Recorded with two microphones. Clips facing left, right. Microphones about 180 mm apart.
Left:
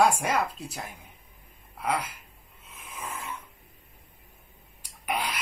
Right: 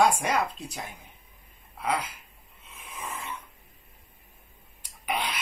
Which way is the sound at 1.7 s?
5° left (ahead or behind).